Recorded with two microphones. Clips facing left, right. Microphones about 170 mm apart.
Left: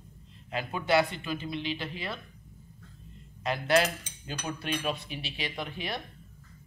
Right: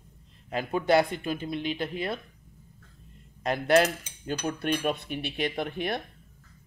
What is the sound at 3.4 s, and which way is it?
Speech, 50° right (ahead or behind).